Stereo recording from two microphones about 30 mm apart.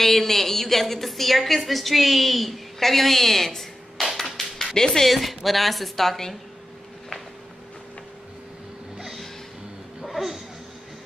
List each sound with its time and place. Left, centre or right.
0.0 s a woman's voice: centre
4.2 s music: centre
4.7 s speech: centre
5.0 s a woman's voice: centre
10.0 s a sound: centre